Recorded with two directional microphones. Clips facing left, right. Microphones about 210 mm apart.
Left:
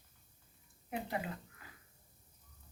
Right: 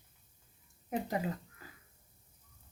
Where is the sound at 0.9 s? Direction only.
40° right (ahead or behind).